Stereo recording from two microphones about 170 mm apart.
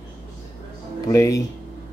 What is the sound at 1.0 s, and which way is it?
Speech, 20° left (ahead or behind).